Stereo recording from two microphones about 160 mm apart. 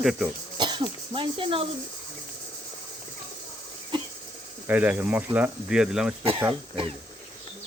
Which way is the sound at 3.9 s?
30° right (ahead or behind).